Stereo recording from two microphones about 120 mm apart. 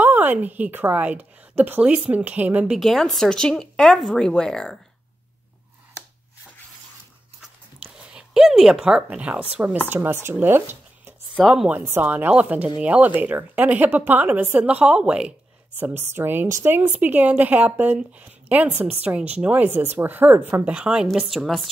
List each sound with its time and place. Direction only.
0.0 s a woman's voice: 15° right (ahead or behind); by 4.7 s 5° left (ahead or behind)
7.8 s speech: 5° right (ahead or behind); by 10.3 s 20° right (ahead or behind)
10.4 s a sound: 20° right (ahead or behind)
11.3 s speech: centre (ahead or behind)
11.8 s a woman's voice: 15° right (ahead or behind)